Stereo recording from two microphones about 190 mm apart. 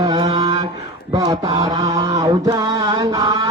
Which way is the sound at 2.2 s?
20° right (ahead or behind).